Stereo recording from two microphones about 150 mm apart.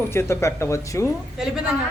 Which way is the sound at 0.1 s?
15° left (ahead or behind).